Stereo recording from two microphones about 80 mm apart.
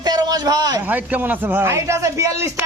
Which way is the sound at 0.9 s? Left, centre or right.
Right.